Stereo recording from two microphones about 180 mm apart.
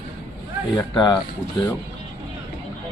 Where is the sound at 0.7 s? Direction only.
20° left (ahead or behind).